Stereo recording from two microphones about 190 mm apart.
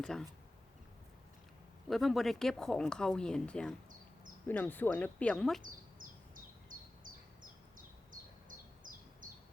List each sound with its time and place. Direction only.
0.0 s speech: centre (ahead or behind)
1.9 s speech: centre (ahead or behind)
6.0 s bird: 45° right (ahead or behind)
8.1 s bird: 45° right (ahead or behind)